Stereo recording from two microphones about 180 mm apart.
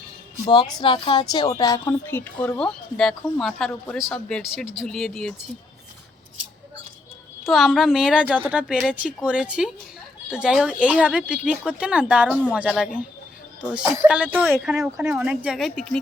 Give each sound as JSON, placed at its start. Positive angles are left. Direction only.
{"t": 0.4, "sound": "a woman's voice", "side_deg": 25}
{"t": 7.4, "sound": "speech", "side_deg": 0}